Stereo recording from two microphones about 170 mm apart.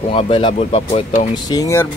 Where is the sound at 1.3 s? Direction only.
20° left (ahead or behind).